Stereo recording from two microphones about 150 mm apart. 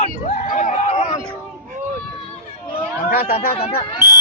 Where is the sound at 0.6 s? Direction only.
50° left (ahead or behind).